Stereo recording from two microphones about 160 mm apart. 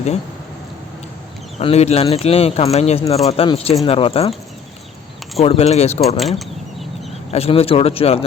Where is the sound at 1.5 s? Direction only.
40° left (ahead or behind).